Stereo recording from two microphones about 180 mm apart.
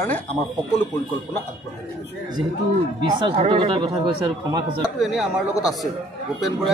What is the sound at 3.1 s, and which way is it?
Speech, 30° right (ahead or behind).